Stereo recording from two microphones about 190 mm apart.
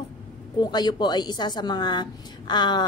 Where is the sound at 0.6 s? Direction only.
20° left (ahead or behind).